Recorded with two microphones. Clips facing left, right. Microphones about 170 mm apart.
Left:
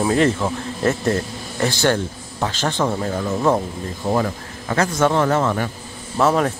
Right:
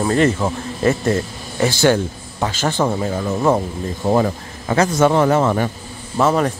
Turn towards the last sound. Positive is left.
turn(degrees=0)  # may be behind; listen again after turning